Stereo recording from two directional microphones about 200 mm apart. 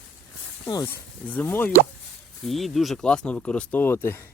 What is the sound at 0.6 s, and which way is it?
Speech, 15° left (ahead or behind).